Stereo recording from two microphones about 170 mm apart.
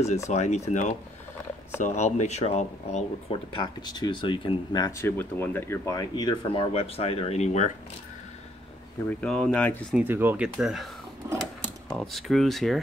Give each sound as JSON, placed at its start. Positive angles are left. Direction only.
{"t": 0.3, "sound": "speech", "side_deg": 40}
{"t": 3.5, "sound": "speech", "side_deg": 25}
{"t": 9.2, "sound": "speech", "side_deg": 5}
{"t": 9.9, "sound": "speech", "side_deg": -10}
{"t": 11.9, "sound": "speech", "side_deg": 0}